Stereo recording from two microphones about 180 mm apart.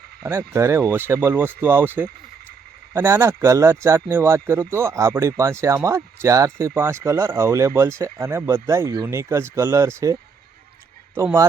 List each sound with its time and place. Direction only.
0.2 s a man's voice: 15° right (ahead or behind)